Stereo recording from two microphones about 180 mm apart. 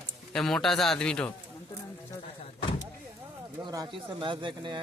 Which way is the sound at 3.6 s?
20° right (ahead or behind).